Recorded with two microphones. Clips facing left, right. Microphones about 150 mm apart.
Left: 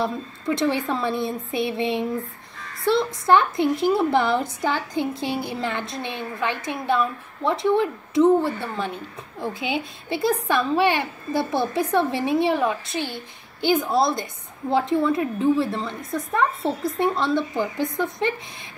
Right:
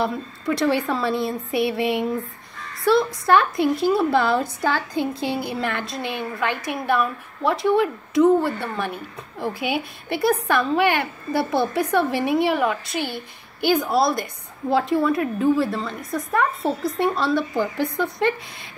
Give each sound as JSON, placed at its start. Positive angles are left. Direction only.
{"t": 0.0, "sound": "a woman's voice", "side_deg": 20}
{"t": 10.1, "sound": "a woman's voice", "side_deg": 25}